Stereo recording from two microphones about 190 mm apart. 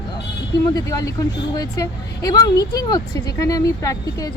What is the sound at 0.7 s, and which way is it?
Speech, 20° left (ahead or behind).